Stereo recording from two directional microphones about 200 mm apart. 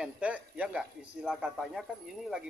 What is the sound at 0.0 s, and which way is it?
Speech, 5° right (ahead or behind).